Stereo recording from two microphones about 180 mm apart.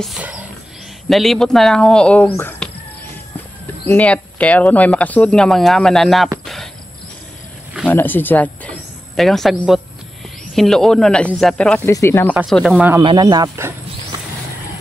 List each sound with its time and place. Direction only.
0.2 s speech: 10° right (ahead or behind); by 2.7 s 10° left (ahead or behind)
3.8 s speech: 10° left (ahead or behind)
6.4 s cricket: centre (ahead or behind)
7.8 s speech: 10° left (ahead or behind)
12.4 s speech: centre (ahead or behind)
13.0 s speech: 25° right (ahead or behind)